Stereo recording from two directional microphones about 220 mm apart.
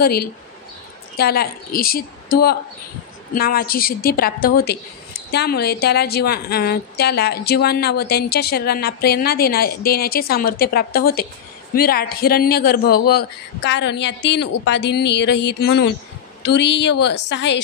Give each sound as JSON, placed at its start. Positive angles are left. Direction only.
{"t": 0.0, "sound": "a woman's voice", "side_deg": 45}
{"t": 3.3, "sound": "a woman's voice", "side_deg": 40}